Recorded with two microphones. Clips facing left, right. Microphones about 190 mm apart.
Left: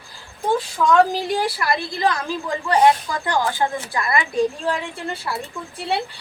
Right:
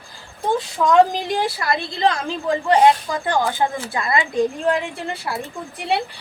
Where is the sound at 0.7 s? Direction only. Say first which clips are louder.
Right 2 dB; 20° right (ahead or behind).